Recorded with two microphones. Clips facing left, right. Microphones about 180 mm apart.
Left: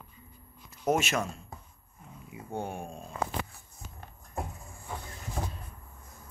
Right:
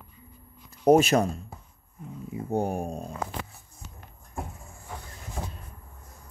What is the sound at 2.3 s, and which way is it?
Speech, 40° right (ahead or behind).